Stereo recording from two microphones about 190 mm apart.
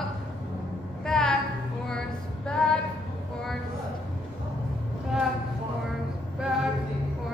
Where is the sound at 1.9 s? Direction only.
5° left (ahead or behind).